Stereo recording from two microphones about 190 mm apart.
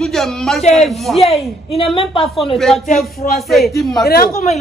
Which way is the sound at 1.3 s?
30° left (ahead or behind).